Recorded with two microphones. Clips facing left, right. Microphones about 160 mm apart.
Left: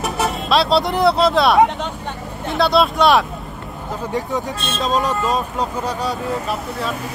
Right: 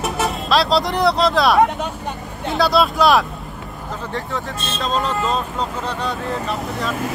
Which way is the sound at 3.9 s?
15° left (ahead or behind).